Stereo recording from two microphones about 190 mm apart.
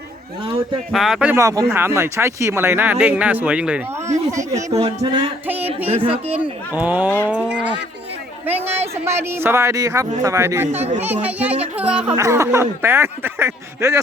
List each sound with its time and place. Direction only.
0.9 s speech: centre (ahead or behind); by 4.4 s 15° right (ahead or behind)
4.4 s speech: 35° right (ahead or behind)
6.7 s speech: 10° right (ahead or behind)
8.4 s speech: 10° right (ahead or behind)
10.7 s speech: 35° right (ahead or behind)
11.0 s speech: 10° right (ahead or behind)